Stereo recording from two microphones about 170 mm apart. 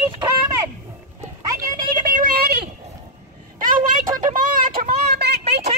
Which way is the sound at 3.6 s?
50° right (ahead or behind).